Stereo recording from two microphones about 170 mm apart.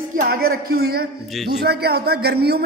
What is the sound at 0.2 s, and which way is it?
A man's voice, 60° right (ahead or behind).